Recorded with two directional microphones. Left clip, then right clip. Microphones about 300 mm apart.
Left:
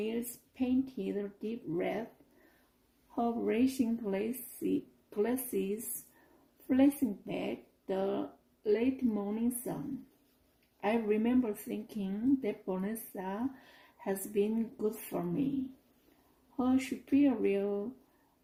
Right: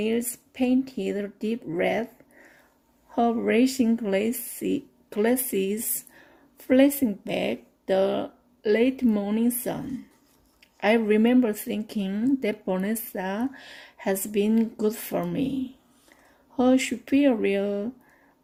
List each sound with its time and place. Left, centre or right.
0.0 s speech: right
3.2 s speech: right
10.8 s speech: right
16.6 s speech: right